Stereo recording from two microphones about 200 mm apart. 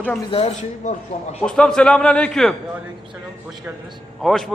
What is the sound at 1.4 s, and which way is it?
A man's voice, 5° left (ahead or behind).